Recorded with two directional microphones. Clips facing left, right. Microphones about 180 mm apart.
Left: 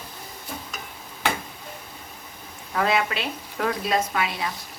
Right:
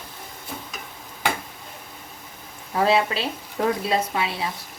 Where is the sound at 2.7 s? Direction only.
30° right (ahead or behind).